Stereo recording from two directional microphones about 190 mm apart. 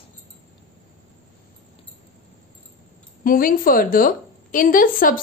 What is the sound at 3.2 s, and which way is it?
A woman's voice, 50° left (ahead or behind).